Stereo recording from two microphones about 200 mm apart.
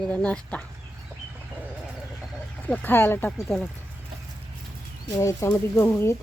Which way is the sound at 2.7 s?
10° left (ahead or behind).